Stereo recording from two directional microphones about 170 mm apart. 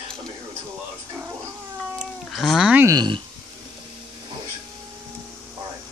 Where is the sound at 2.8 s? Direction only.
25° right (ahead or behind).